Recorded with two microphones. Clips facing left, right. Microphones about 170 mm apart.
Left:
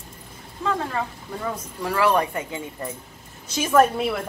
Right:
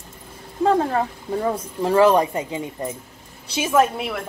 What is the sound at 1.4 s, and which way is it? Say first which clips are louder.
Speech: right 6 dB; 30° right (ahead or behind).